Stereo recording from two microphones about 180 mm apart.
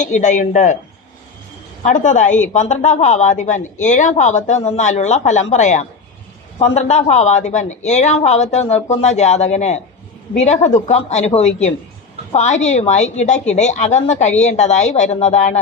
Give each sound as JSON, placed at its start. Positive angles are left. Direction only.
{"t": 0.0, "sound": "speech", "side_deg": 40}
{"t": 1.8, "sound": "speech", "side_deg": 45}